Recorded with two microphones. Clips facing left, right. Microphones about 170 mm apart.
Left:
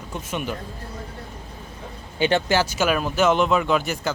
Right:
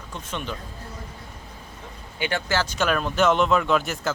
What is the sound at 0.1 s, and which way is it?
Speech, 10° left (ahead or behind).